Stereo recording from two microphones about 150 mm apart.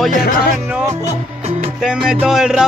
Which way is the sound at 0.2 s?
90° left.